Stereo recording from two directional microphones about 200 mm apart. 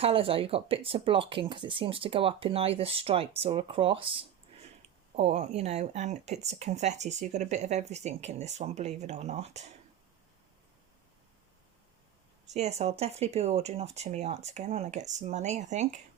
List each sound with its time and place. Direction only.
0.0 s speech: 25° right (ahead or behind)
12.5 s speech: 35° right (ahead or behind)